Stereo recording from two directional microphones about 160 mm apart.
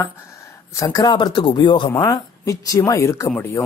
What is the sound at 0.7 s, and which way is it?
Speech, 25° left (ahead or behind).